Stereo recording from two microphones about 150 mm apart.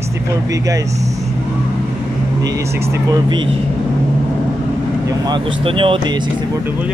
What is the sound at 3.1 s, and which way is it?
Speech, 30° right (ahead or behind).